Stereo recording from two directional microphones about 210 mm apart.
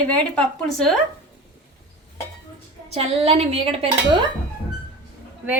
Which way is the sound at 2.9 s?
30° right (ahead or behind).